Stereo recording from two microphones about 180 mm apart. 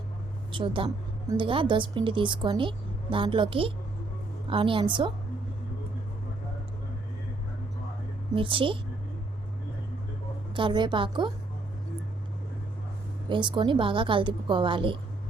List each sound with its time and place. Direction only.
0.5 s speech: 30° right (ahead or behind)
8.4 s speech: 30° right (ahead or behind)
10.5 s speech: 25° right (ahead or behind)
13.2 s speech: 25° right (ahead or behind)